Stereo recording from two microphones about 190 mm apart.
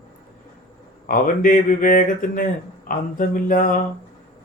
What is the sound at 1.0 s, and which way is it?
Speech, 45° left (ahead or behind).